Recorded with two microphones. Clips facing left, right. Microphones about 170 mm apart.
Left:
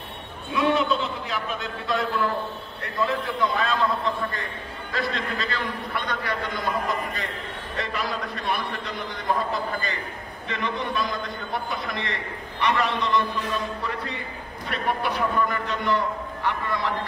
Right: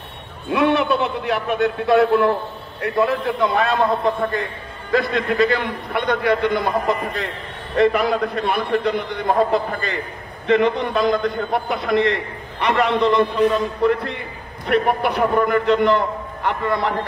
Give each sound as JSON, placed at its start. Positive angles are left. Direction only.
{"t": 0.5, "sound": "a man's voice", "side_deg": -65}